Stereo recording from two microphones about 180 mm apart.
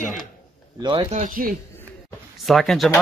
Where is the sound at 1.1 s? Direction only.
45° right (ahead or behind).